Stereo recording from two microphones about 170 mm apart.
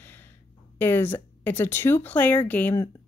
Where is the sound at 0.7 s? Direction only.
10° left (ahead or behind).